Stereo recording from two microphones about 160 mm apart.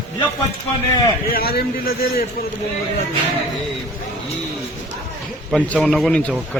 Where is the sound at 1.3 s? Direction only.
70° left (ahead or behind).